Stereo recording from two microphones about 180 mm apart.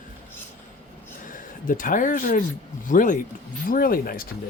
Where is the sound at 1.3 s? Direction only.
45° left (ahead or behind).